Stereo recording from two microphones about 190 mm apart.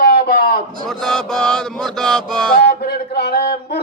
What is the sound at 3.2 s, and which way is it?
Speech, 60° left (ahead or behind).